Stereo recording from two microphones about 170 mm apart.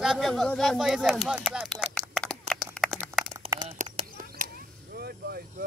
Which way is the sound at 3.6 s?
45° right (ahead or behind).